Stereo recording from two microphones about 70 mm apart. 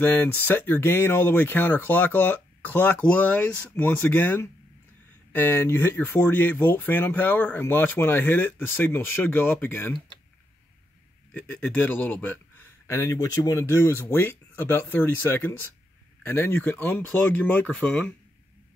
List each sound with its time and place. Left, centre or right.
0.0 s speech: left
11.3 s speech: left
12.8 s speech: left